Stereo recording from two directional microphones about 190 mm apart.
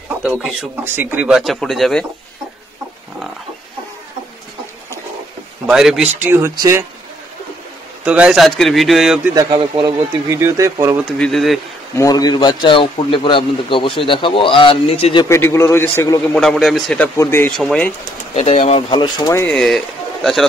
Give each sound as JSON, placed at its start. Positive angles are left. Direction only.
{"t": 0.2, "sound": "a man's voice", "side_deg": -10}
{"t": 5.7, "sound": "a man's voice", "side_deg": 0}
{"t": 6.2, "sound": "speech", "side_deg": -15}
{"t": 8.0, "sound": "a man's voice", "side_deg": -5}
{"t": 9.3, "sound": "speech", "side_deg": -20}
{"t": 11.1, "sound": "a man's voice", "side_deg": 0}
{"t": 12.0, "sound": "a man's voice", "side_deg": 20}
{"t": 15.2, "sound": "a man's voice", "side_deg": 15}
{"t": 16.3, "sound": "a man's voice", "side_deg": 0}
{"t": 18.3, "sound": "a man's voice", "side_deg": 35}
{"t": 19.4, "sound": "speech", "side_deg": 5}